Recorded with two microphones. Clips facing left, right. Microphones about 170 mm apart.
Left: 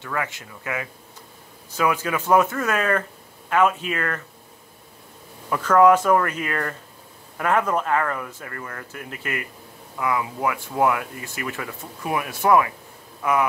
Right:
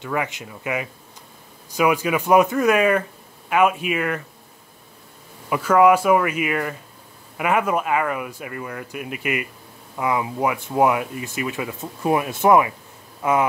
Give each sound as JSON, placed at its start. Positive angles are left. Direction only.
{"t": 0.0, "sound": "speech", "side_deg": -15}
{"t": 5.5, "sound": "speech", "side_deg": -10}